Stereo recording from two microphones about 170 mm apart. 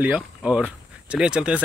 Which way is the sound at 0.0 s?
5° right (ahead or behind).